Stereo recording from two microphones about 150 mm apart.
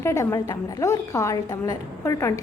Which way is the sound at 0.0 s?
20° left (ahead or behind).